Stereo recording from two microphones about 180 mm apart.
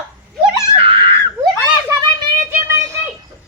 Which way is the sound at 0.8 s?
30° right (ahead or behind).